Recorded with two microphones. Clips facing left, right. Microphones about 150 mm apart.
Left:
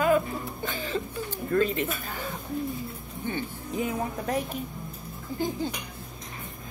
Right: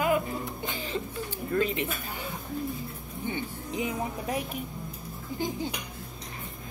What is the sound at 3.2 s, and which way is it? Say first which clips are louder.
Speech: left 1 dB; 15° right (ahead or behind).